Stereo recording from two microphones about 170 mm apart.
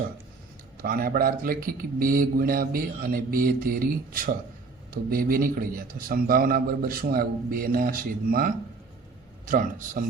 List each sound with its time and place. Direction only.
0.8 s speech: 60° right (ahead or behind)